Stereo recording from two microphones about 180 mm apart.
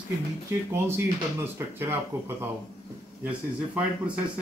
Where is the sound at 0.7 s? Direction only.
10° right (ahead or behind).